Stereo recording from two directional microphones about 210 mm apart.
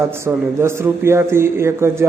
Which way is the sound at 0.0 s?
10° right (ahead or behind).